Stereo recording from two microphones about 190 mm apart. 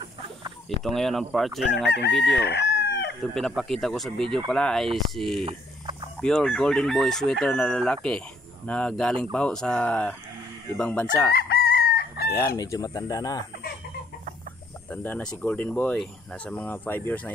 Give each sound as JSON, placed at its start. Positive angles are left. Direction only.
{"t": 0.8, "sound": "chicken", "side_deg": 0}
{"t": 2.3, "sound": "chicken", "side_deg": 60}
{"t": 3.2, "sound": "chicken", "side_deg": 0}
{"t": 5.4, "sound": "a sound", "side_deg": -25}
{"t": 6.2, "sound": "chicken", "side_deg": 5}
{"t": 10.8, "sound": "speech", "side_deg": 10}
{"t": 11.3, "sound": "chicken", "side_deg": 55}
{"t": 12.4, "sound": "speech", "side_deg": 15}
{"t": 14.9, "sound": "speech", "side_deg": 10}